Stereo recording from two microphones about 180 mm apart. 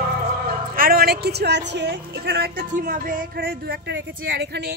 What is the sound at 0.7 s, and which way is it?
A woman's voice, 55° right (ahead or behind).